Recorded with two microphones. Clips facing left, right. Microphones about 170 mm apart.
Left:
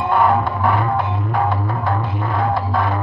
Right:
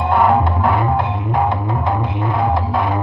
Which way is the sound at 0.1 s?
20° right (ahead or behind).